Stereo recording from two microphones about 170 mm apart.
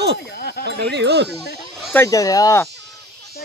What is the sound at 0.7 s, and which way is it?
Speech, 85° right.